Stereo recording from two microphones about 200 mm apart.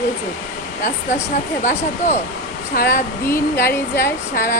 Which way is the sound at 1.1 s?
40° left (ahead or behind).